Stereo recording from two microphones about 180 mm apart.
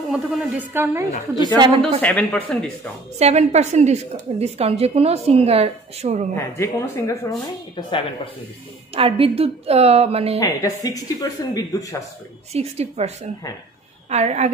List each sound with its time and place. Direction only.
0.1 s a woman's voice: 10° right (ahead or behind)
1.8 s speech: 10° left (ahead or behind)
3.2 s a woman's voice: 35° right (ahead or behind)
6.3 s speech: 15° left (ahead or behind)
8.9 s a woman's voice: 30° right (ahead or behind)
10.4 s speech: 20° left (ahead or behind)
12.5 s a woman's voice: 35° right (ahead or behind)